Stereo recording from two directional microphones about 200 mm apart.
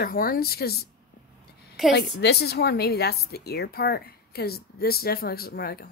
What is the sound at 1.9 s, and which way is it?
A woman's voice, 55° left (ahead or behind).